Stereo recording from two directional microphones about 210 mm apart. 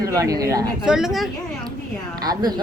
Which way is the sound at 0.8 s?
Centre (ahead or behind).